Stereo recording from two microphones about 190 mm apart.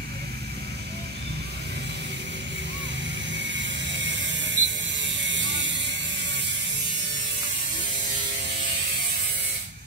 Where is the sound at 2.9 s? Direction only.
70° right (ahead or behind).